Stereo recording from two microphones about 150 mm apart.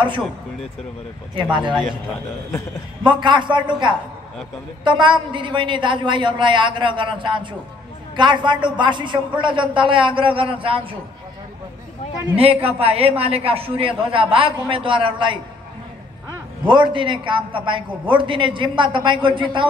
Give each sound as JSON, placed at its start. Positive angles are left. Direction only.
{"t": 1.6, "sound": "speech", "side_deg": 5}
{"t": 3.0, "sound": "a man's voice", "side_deg": -30}
{"t": 12.4, "sound": "a man's voice", "side_deg": -40}
{"t": 16.6, "sound": "a man's voice", "side_deg": -30}